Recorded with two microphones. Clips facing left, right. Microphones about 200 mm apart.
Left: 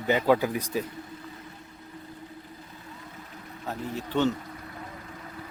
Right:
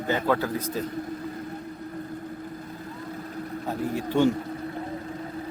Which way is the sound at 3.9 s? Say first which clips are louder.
Right 4 dB; 10° right (ahead or behind).